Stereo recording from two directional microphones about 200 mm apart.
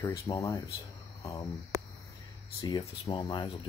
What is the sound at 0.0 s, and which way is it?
Speech, 15° left (ahead or behind).